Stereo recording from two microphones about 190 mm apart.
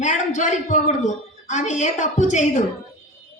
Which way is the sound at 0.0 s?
40° left (ahead or behind).